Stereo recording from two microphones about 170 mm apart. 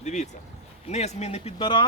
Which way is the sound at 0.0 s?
45° left (ahead or behind).